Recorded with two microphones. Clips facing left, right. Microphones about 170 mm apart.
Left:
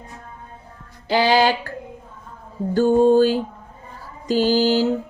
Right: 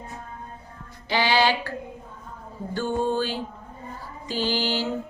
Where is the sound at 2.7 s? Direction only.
45° left (ahead or behind).